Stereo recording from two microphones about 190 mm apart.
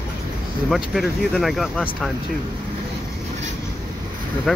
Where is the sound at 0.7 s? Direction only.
Centre (ahead or behind).